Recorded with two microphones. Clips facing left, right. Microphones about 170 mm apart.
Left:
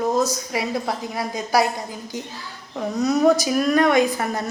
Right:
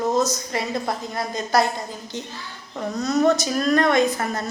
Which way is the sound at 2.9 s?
10° left (ahead or behind).